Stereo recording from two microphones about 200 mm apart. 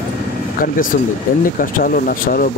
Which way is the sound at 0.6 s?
45° left (ahead or behind).